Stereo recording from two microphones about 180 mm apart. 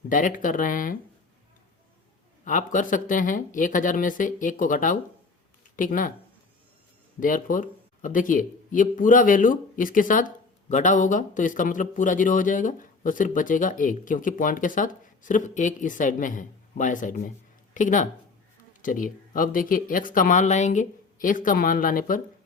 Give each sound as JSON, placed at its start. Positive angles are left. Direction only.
{"t": 0.1, "sound": "speech", "side_deg": 45}
{"t": 2.4, "sound": "speech", "side_deg": 45}
{"t": 7.2, "sound": "speech", "side_deg": 50}